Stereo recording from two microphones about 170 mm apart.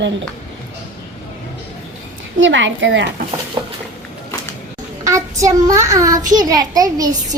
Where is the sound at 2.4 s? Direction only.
90° right.